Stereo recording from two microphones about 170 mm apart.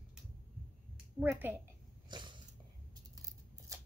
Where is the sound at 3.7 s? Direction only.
20° right (ahead or behind).